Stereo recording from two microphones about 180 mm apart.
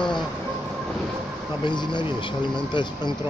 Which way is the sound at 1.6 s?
25° left (ahead or behind).